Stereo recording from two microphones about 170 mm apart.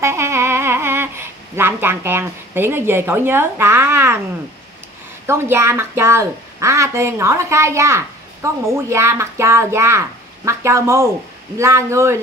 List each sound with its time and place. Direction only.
0.0 s speech: 15° right (ahead or behind)
5.2 s a woman's voice: 15° right (ahead or behind)